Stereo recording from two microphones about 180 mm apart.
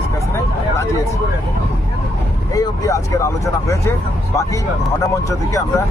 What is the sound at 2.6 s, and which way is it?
Speech, 20° left (ahead or behind).